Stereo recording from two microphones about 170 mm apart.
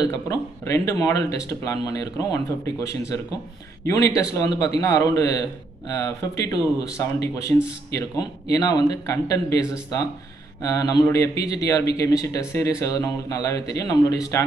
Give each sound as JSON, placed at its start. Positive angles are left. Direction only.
{"t": 0.0, "sound": "speech", "side_deg": 20}
{"t": 4.2, "sound": "speech", "side_deg": 20}